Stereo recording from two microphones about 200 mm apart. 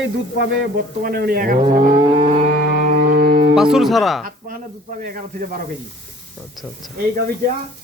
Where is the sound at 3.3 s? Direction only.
30° right (ahead or behind).